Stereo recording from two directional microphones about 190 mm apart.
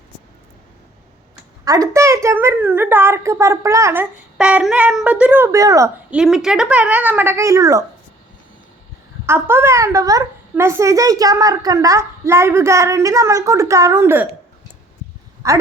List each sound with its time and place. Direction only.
1.6 s a woman's voice: 20° right (ahead or behind)
4.4 s a woman's voice: 5° right (ahead or behind)
6.1 s a woman's voice: 5° right (ahead or behind); by 7.9 s 20° right (ahead or behind)
9.2 s a woman's voice: 10° right (ahead or behind)
15.4 s a woman's voice: 15° right (ahead or behind)